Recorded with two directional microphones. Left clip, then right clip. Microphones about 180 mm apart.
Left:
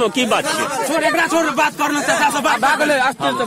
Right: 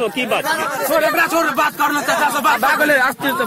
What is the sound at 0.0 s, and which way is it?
Speech, 40° left (ahead or behind).